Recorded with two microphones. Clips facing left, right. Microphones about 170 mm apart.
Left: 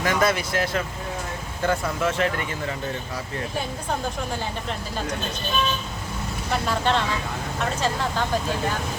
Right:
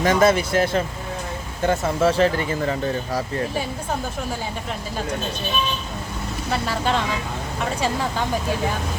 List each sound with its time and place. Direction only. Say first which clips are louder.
0.0 s speech: right 5 dB; 25° right (ahead or behind)
6.5 s speech: even; 5° right (ahead or behind)